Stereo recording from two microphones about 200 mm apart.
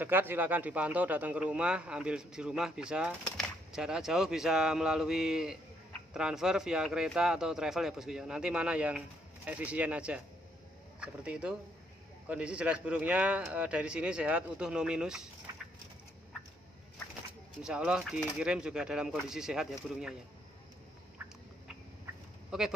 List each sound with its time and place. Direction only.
0.0 s a man's voice: 10° right (ahead or behind)
17.6 s a man's voice: 5° right (ahead or behind)